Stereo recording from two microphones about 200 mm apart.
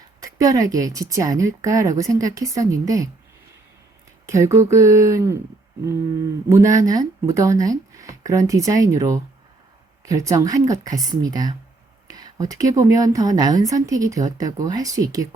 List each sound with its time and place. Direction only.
0.2 s a woman's voice: 15° right (ahead or behind)
4.3 s a woman's voice: 15° right (ahead or behind)
6.5 s a woman's voice: 15° right (ahead or behind)